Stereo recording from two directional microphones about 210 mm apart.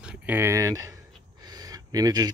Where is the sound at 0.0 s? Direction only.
5° right (ahead or behind).